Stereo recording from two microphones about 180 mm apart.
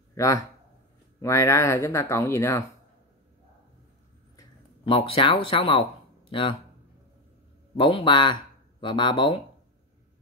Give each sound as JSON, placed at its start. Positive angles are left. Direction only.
{"t": 0.1, "sound": "a sound", "side_deg": 15}
{"t": 1.2, "sound": "speech", "side_deg": 15}
{"t": 4.8, "sound": "speech", "side_deg": 30}
{"t": 7.7, "sound": "speech", "side_deg": 30}